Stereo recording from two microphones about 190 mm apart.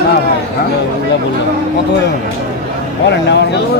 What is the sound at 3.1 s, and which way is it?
Speech, 65° left (ahead or behind).